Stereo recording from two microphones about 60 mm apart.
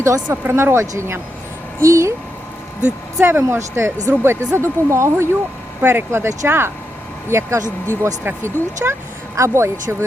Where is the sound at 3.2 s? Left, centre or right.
Right.